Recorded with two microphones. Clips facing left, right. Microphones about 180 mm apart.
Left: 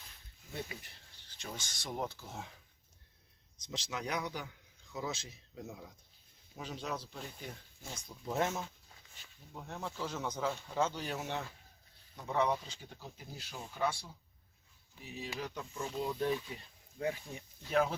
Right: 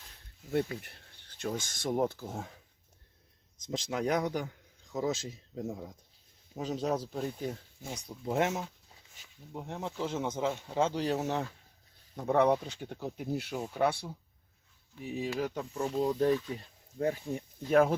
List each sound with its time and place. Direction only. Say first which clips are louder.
0.5 s a man's voice: right 12 dB; 60° right (ahead or behind)
3.7 s a man's voice: right 8 dB; 50° right (ahead or behind)
8.0 s speech: right 5 dB; 25° right (ahead or behind)
9.5 s speech: right 5 dB; 25° right (ahead or behind)
12.1 s speech: right 7 dB; 55° right (ahead or behind)
15.4 s a man's voice: right 8 dB; 45° right (ahead or behind)